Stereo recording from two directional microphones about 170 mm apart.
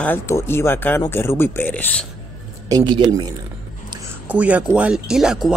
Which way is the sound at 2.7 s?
25° right (ahead or behind).